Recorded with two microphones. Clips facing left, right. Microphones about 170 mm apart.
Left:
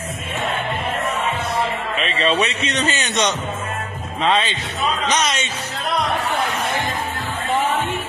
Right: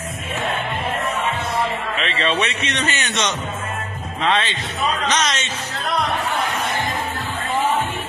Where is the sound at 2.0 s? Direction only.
35° left (ahead or behind).